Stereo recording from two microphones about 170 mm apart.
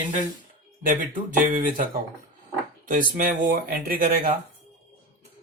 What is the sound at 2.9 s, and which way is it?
Speech, 55° right (ahead or behind).